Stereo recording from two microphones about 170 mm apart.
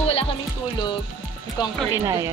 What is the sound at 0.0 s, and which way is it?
Music, 35° left (ahead or behind).